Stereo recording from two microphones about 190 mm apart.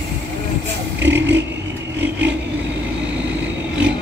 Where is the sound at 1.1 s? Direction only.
70° right (ahead or behind).